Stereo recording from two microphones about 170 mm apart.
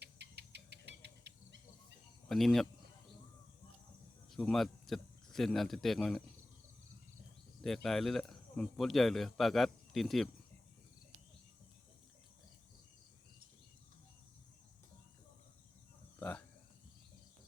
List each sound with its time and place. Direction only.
0.0 s rodents: 80° right
2.3 s speech: centre (ahead or behind)
4.3 s speech: centre (ahead or behind)
7.6 s speech: centre (ahead or behind)